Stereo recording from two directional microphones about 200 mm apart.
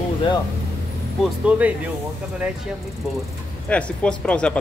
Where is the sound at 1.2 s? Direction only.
5° right (ahead or behind).